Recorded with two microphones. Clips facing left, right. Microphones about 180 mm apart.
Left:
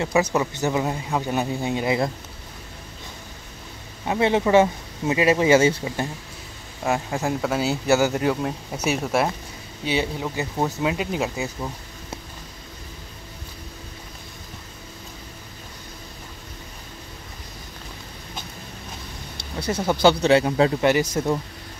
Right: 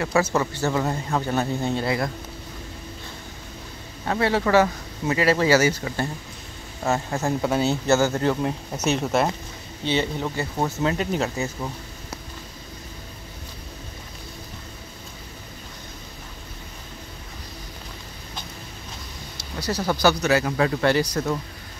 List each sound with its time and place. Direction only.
0.0 s speech: 15° left (ahead or behind)
4.0 s speech: 15° left (ahead or behind)
6.9 s speech: 10° left (ahead or behind)
19.6 s speech: 25° left (ahead or behind)